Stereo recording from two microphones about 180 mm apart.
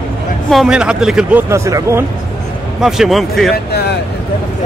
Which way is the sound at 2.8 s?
Centre (ahead or behind).